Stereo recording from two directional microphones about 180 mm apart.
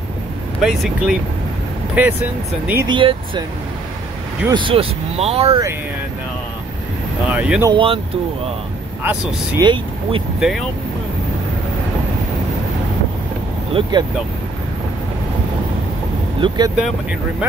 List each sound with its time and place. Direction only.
0.6 s speech: 5° right (ahead or behind)
2.9 s speech: 25° right (ahead or behind)
4.5 s speech: 30° right (ahead or behind)
7.2 s speech: 5° right (ahead or behind)
7.7 s speech: 30° right (ahead or behind)
9.0 s speech: 5° right (ahead or behind)
9.6 s speech: 25° right (ahead or behind)
13.9 s speech: 25° right (ahead or behind)
16.3 s speech: 25° right (ahead or behind)